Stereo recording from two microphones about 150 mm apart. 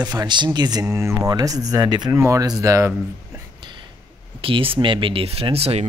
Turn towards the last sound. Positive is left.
turn(degrees=-40)  # may be behind; listen again after turning